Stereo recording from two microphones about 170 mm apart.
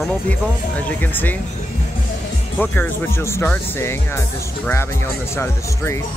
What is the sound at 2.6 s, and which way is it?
Speech, 10° left (ahead or behind).